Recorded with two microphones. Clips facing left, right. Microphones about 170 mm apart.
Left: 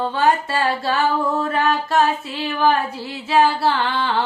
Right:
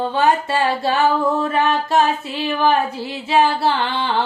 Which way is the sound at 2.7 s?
20° right (ahead or behind).